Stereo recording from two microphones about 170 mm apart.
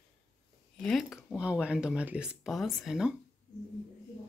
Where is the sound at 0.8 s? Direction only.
Centre (ahead or behind).